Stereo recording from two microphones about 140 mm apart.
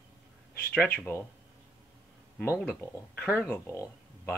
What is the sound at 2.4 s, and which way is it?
Speech, 15° left (ahead or behind).